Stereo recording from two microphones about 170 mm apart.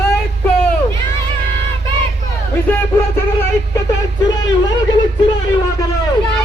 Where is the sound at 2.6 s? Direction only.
15° left (ahead or behind).